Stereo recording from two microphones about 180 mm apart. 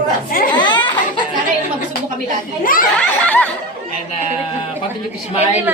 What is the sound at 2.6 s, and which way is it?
Speech, 50° left (ahead or behind).